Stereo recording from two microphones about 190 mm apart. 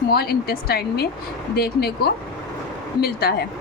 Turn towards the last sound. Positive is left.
turn(degrees=55)  # may be behind; listen again after turning